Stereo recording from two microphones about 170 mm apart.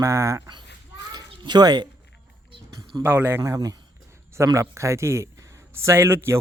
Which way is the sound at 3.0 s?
10° right (ahead or behind).